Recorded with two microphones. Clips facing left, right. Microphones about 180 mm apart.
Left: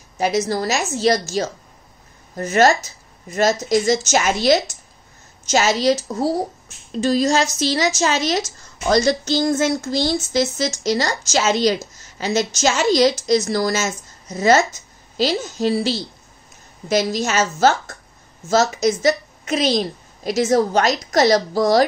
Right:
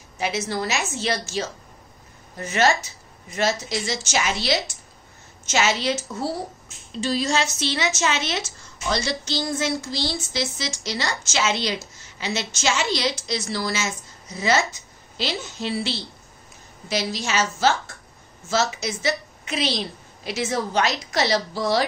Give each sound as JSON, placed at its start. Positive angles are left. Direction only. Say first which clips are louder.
{"t": 0.2, "sound": "a woman's voice", "louder": "left 6 dB", "side_deg": 40}
{"t": 11.9, "sound": "a sound", "louder": "left 7 dB", "side_deg": 40}
{"t": 12.5, "sound": "a woman's voice", "louder": "left 8 dB", "side_deg": 45}